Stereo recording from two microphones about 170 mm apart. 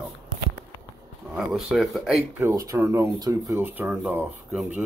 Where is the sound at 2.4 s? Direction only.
15° right (ahead or behind).